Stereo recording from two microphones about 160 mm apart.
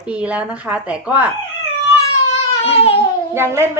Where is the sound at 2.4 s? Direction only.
40° left (ahead or behind).